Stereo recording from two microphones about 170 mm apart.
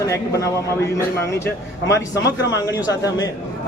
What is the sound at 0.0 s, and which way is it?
A man's voice, 20° left (ahead or behind).